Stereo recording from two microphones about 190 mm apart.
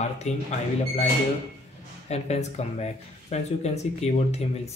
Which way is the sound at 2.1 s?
35° left (ahead or behind).